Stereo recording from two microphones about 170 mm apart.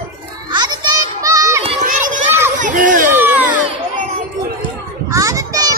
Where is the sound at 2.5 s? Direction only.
50° right (ahead or behind).